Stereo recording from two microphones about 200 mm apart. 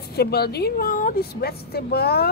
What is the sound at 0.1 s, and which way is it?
A woman's voice, 50° left (ahead or behind).